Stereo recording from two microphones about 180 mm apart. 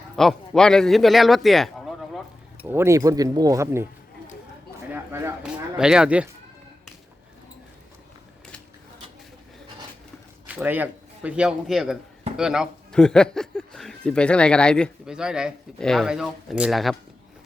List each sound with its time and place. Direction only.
0.2 s speech: centre (ahead or behind)
2.6 s speech: 15° right (ahead or behind)
4.9 s speech: 15° right (ahead or behind)
10.4 s speech: 10° right (ahead or behind)